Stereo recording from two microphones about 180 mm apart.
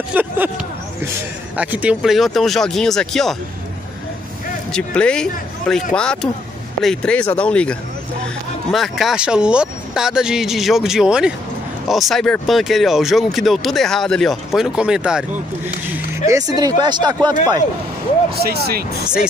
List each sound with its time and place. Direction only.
0.1 s speech: 10° right (ahead or behind)
1.6 s speech: 10° right (ahead or behind)
4.7 s speech: 5° left (ahead or behind)
6.8 s speech: 5° left (ahead or behind)
8.7 s speech: centre (ahead or behind)
16.3 s speech: 20° right (ahead or behind)
18.3 s speech: 60° right (ahead or behind)